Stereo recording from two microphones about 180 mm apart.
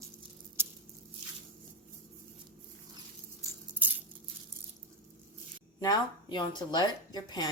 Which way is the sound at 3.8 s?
10° right (ahead or behind).